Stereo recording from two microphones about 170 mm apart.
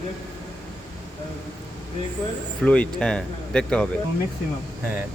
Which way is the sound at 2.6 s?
5° left (ahead or behind).